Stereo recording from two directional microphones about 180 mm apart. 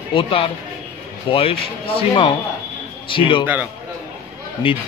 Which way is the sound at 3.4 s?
10° right (ahead or behind).